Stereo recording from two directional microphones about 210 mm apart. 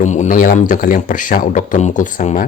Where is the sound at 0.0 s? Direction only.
35° left (ahead or behind).